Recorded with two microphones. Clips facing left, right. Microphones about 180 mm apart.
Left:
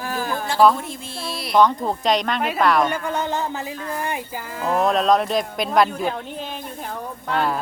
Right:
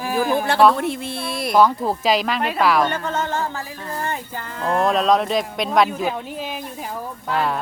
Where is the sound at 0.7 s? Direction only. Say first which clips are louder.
Right 7 dB; 60° right (ahead or behind).